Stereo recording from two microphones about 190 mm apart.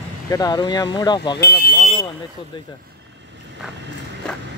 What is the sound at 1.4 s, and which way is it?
Speech, 50° left (ahead or behind).